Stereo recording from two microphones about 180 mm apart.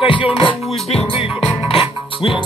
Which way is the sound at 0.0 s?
30° left (ahead or behind).